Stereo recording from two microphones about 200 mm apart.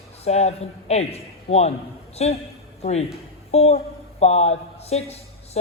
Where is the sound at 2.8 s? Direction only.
35° left (ahead or behind).